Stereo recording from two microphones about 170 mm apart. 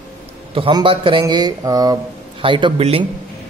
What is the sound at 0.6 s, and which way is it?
Speech, 30° right (ahead or behind).